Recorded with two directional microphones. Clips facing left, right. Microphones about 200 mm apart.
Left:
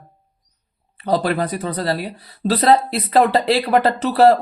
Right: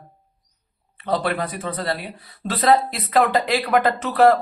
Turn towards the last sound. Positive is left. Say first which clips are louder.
# left 3 dB
turn(degrees=30)  # may be behind; listen again after turning